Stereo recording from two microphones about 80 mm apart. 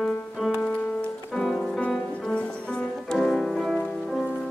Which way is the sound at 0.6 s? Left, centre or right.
Centre.